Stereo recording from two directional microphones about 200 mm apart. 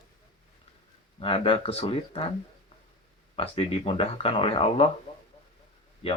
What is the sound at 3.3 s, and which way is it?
Speech, 30° left (ahead or behind).